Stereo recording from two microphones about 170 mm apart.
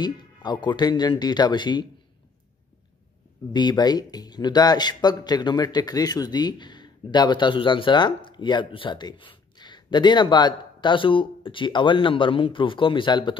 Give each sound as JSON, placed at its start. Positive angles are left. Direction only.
{"t": 0.0, "sound": "speech", "side_deg": 25}
{"t": 3.5, "sound": "speech", "side_deg": 25}